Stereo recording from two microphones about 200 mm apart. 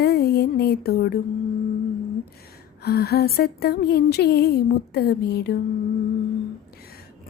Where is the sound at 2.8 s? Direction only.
50° left (ahead or behind).